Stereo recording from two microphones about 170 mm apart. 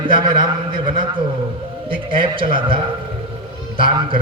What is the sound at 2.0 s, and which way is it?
Speech, 30° right (ahead or behind).